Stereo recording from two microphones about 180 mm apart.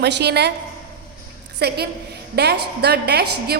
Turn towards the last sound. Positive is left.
turn(degrees=-65)  # may be behind; listen again after turning